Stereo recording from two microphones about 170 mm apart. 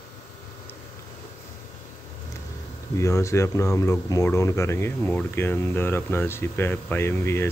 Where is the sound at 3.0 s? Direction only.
15° left (ahead or behind).